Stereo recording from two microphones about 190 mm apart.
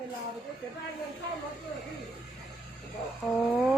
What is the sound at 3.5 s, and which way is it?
Speech, centre (ahead or behind).